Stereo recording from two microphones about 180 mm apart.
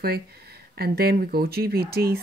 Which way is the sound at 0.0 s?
60° right (ahead or behind).